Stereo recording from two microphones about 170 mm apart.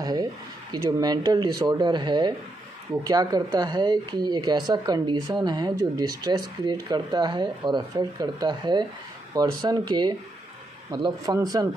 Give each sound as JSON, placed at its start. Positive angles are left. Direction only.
{"t": 0.0, "sound": "speech", "side_deg": -25}